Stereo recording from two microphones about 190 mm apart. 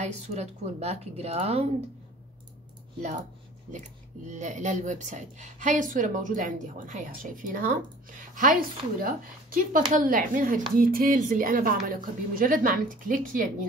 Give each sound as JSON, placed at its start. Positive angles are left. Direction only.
{"t": 0.0, "sound": "speech", "side_deg": -35}
{"t": 3.0, "sound": "speech", "side_deg": -40}
{"t": 4.3, "sound": "a woman's voice", "side_deg": -40}